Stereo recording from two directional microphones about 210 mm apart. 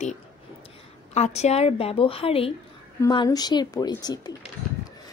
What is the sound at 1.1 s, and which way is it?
A woman's voice, 30° left (ahead or behind).